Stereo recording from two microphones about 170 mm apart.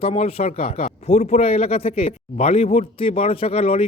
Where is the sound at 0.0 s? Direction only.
40° left (ahead or behind).